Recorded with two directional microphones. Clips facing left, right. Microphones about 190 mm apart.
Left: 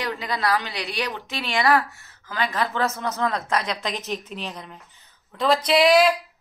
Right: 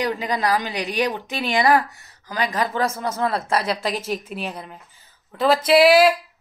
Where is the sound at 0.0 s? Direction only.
15° right (ahead or behind).